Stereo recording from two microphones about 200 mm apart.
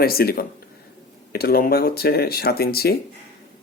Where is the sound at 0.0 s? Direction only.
50° left (ahead or behind).